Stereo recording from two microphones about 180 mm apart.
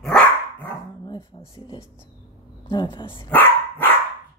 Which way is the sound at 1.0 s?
25° left (ahead or behind).